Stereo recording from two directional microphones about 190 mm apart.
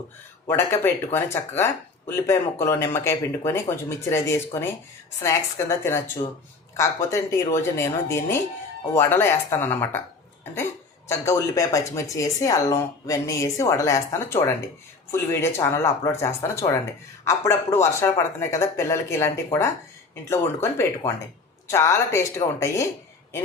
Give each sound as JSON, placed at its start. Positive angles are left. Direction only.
{"t": 0.4, "sound": "speech", "side_deg": 10}
{"t": 11.3, "sound": "speech", "side_deg": 15}